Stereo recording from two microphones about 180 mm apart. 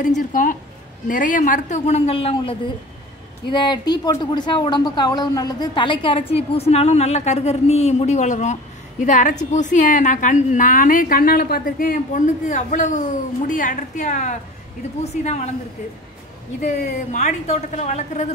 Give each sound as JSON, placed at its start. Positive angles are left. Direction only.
{"t": 0.0, "sound": "a woman's voice", "side_deg": 50}
{"t": 16.6, "sound": "a woman's voice", "side_deg": 40}